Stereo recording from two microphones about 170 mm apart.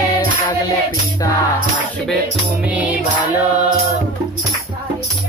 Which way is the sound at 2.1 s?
5° right (ahead or behind).